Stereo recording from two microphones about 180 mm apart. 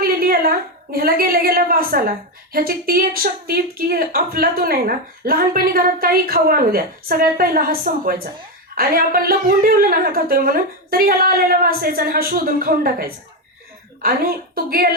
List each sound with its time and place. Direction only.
0.0 s a woman's voice: 55° right (ahead or behind)